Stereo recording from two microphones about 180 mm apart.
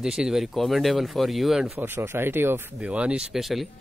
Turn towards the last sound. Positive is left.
turn(degrees=0)  # may be behind; listen again after turning